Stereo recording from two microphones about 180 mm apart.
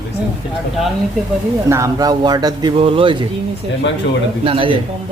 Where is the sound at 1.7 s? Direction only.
20° right (ahead or behind).